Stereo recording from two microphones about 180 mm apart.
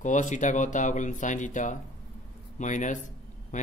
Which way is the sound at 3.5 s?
45° left (ahead or behind).